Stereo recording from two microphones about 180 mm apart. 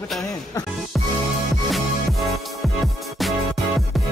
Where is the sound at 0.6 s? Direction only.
20° left (ahead or behind).